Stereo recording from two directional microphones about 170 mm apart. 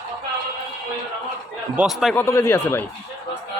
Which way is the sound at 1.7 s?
Centre (ahead or behind).